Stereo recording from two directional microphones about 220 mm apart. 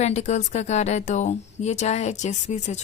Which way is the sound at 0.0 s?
30° left (ahead or behind).